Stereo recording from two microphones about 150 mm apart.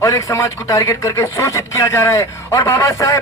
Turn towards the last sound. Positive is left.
turn(degrees=20)  # may be behind; listen again after turning